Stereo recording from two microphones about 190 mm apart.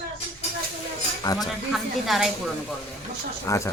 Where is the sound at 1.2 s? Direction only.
20° left (ahead or behind).